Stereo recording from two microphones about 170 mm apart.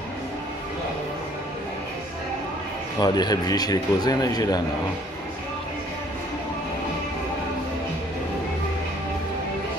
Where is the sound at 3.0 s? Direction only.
25° left (ahead or behind).